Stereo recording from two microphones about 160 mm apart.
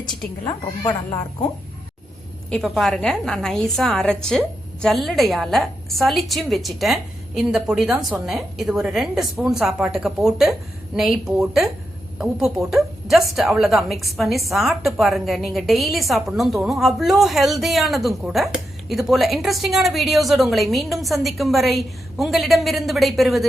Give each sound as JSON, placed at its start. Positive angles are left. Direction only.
{"t": 0.4, "sound": "speech", "side_deg": 25}
{"t": 2.5, "sound": "a woman's voice", "side_deg": 0}